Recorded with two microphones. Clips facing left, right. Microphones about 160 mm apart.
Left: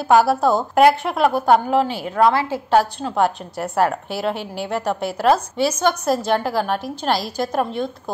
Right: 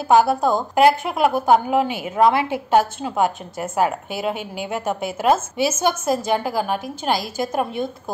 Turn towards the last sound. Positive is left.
turn(degrees=-5)  # may be behind; listen again after turning